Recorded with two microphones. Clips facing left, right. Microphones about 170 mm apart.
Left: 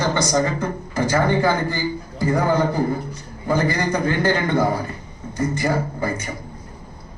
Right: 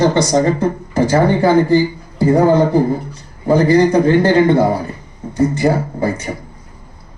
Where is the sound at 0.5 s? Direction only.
35° right (ahead or behind).